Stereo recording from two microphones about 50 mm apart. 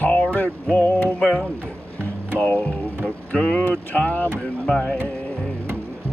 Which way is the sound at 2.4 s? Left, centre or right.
Left.